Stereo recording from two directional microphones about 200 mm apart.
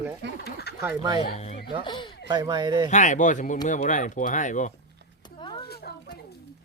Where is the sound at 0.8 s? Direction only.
15° right (ahead or behind).